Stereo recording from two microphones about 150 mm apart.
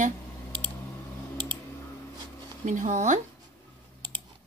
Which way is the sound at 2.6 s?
55° right (ahead or behind).